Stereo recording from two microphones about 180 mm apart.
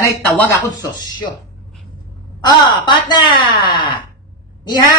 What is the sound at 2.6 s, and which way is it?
Speech, 25° left (ahead or behind).